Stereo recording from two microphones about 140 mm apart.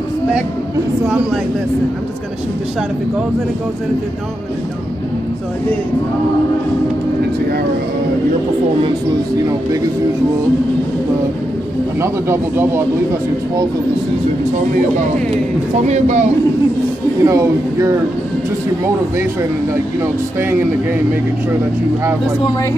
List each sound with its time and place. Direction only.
12.0 s speech: 20° right (ahead or behind)
15.9 s a man's voice: 55° right (ahead or behind)
17.2 s speech: 25° right (ahead or behind)
20.0 s speech: 15° right (ahead or behind)